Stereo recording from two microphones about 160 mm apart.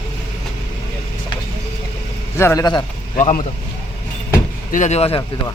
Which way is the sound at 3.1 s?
50° left (ahead or behind).